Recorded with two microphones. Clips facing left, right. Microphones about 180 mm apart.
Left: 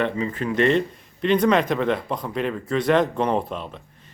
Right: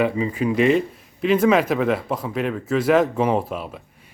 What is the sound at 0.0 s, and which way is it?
Speech, 10° right (ahead or behind).